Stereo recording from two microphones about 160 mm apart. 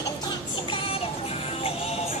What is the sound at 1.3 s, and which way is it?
Music, 35° left (ahead or behind).